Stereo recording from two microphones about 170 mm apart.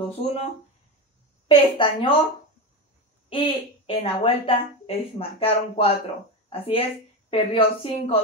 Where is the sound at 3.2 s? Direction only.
35° left (ahead or behind).